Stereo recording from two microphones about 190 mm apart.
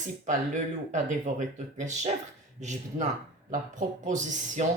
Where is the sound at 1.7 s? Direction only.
40° right (ahead or behind).